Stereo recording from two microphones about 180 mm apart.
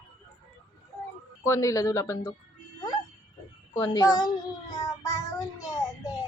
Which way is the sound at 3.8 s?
20° left (ahead or behind).